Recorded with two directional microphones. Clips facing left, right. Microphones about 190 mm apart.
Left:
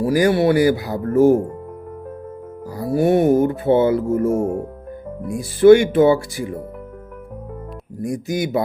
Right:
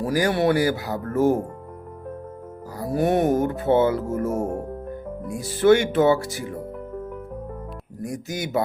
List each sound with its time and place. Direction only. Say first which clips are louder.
0.0 s speech: left 5 dB; 10° left (ahead or behind)
2.9 s speech: left 5 dB; 10° left (ahead or behind)
8.0 s speech: left 7 dB; 10° left (ahead or behind)